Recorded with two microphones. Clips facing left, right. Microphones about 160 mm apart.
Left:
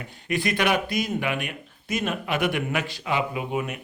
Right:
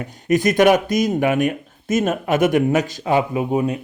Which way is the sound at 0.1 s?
45° right (ahead or behind).